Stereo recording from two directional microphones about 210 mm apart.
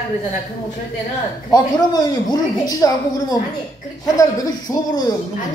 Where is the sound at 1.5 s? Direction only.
20° left (ahead or behind).